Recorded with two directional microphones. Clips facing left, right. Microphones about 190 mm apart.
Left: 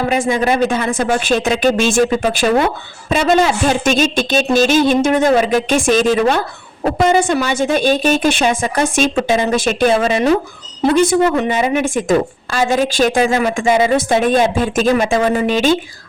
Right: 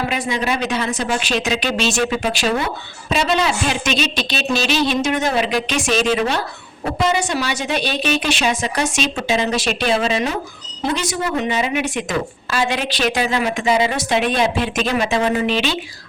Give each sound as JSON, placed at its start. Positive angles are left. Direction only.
{"t": 0.2, "sound": "speech", "side_deg": 50}